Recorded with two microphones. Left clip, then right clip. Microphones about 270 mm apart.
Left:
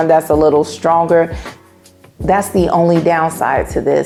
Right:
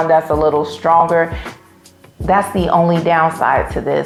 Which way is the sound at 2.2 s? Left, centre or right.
Left.